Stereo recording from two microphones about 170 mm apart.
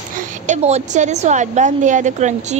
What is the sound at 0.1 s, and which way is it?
A woman's voice, 50° right (ahead or behind).